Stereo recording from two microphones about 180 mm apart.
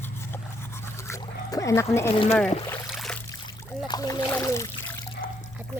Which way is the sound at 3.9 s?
20° left (ahead or behind).